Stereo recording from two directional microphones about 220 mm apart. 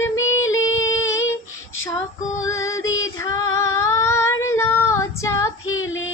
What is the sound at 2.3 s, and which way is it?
Music, 15° left (ahead or behind).